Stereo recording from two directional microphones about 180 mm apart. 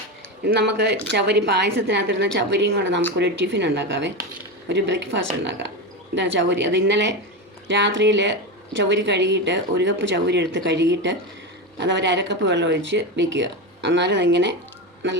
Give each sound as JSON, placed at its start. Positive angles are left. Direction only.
{"t": 0.4, "sound": "a woman's voice", "side_deg": -70}
{"t": 6.1, "sound": "a woman's voice", "side_deg": -70}
{"t": 6.5, "sound": "speech", "side_deg": -80}